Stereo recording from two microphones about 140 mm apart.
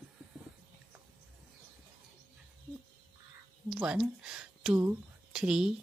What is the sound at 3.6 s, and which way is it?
Speech, 5° right (ahead or behind).